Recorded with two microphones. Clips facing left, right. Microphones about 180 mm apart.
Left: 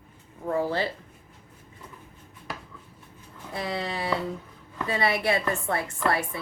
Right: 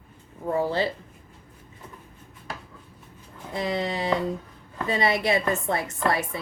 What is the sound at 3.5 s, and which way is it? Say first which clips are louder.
Speech: right 4 dB; 20° right (ahead or behind).